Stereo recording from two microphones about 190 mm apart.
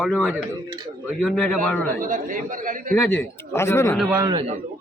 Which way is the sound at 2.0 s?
45° right (ahead or behind).